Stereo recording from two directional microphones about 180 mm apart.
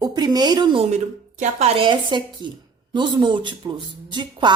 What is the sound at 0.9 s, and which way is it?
A woman's voice, 40° right (ahead or behind).